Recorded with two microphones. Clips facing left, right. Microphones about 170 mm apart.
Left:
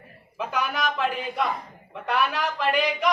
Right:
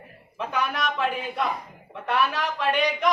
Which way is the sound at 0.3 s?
Centre (ahead or behind).